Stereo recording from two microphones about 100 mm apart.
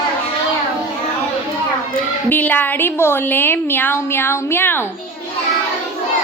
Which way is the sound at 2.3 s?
15° left (ahead or behind).